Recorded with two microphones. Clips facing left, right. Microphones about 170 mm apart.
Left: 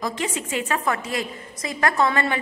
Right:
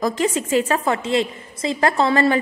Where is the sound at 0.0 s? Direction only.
40° right (ahead or behind).